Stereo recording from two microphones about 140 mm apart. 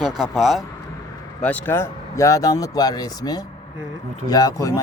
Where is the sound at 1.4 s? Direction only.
15° left (ahead or behind).